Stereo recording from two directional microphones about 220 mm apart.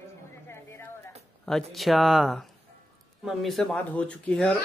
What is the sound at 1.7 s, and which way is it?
Speech, centre (ahead or behind).